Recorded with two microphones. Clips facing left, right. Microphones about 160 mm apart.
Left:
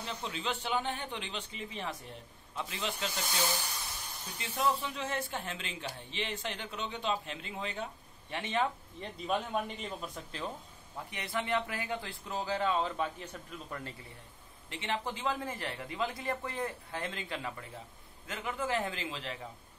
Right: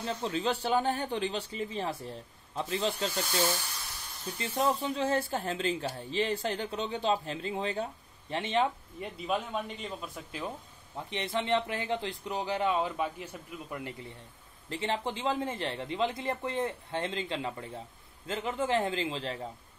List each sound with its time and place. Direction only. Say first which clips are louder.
0.0 s speech: right 7 dB; 40° right (ahead or behind)
4.4 s speech: right 3 dB; 35° right (ahead or behind)
9.0 s speech: right 2 dB; centre (ahead or behind)
11.0 s speech: right 4 dB; 25° right (ahead or behind)
14.7 s speech: right 4 dB; 35° right (ahead or behind)